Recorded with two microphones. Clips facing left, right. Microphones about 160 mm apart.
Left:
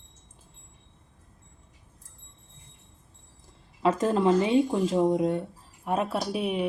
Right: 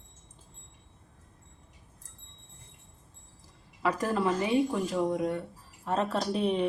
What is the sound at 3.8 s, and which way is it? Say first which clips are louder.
Speech: left 5 dB; 20° left (ahead or behind).